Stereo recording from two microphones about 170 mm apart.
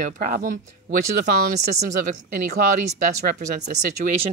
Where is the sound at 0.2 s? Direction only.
55° right (ahead or behind).